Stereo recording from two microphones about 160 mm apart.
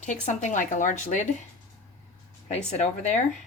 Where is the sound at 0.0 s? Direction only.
45° left (ahead or behind).